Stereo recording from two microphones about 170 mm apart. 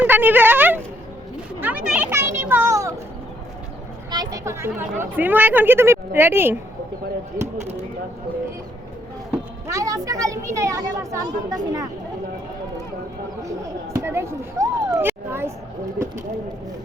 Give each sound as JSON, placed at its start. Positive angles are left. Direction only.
{"t": 0.0, "sound": "speech", "side_deg": -10}
{"t": 4.1, "sound": "speech", "side_deg": -20}
{"t": 7.4, "sound": "speech", "side_deg": -55}
{"t": 9.6, "sound": "speech", "side_deg": -20}
{"t": 13.9, "sound": "speech", "side_deg": -15}